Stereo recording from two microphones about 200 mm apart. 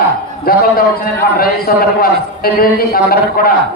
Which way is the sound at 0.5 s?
45° left (ahead or behind).